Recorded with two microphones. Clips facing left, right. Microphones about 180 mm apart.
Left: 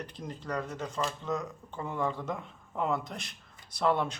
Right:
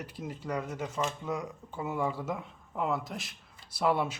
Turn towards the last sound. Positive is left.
turn(degrees=-10)  # may be behind; listen again after turning